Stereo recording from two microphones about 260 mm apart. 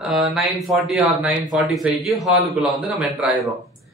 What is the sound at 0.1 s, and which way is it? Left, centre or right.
Speech, centre.